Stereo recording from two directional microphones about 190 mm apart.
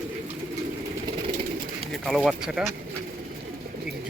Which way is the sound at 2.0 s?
Centre (ahead or behind).